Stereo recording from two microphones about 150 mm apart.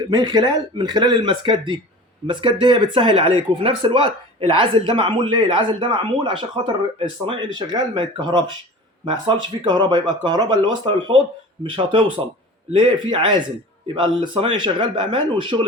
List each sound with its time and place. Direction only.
0.1 s speech: 30° right (ahead or behind)